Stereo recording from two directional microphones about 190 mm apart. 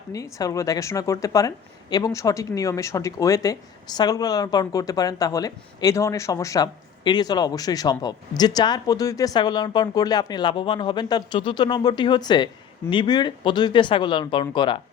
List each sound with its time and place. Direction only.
0.1 s speech: 15° left (ahead or behind)